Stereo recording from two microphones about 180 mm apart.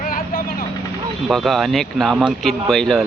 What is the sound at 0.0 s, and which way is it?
Vehicle, 50° left (ahead or behind).